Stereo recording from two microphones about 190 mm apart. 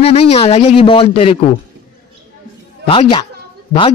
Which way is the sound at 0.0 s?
30° left (ahead or behind).